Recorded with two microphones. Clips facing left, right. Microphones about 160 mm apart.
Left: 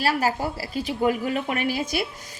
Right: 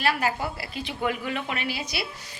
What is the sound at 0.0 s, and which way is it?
A woman's voice, 40° left (ahead or behind).